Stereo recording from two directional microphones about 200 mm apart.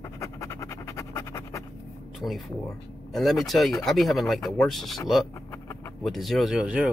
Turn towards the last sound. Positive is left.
turn(degrees=-5)  # may be behind; listen again after turning